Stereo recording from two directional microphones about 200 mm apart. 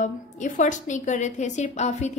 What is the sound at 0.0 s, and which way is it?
A woman's voice, 40° left (ahead or behind).